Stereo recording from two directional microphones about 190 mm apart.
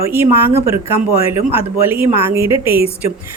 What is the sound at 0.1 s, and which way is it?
Speech, 10° right (ahead or behind).